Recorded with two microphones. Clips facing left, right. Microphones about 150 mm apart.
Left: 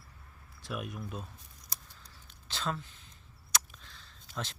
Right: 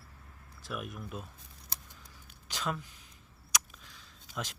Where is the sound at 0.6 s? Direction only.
Centre (ahead or behind).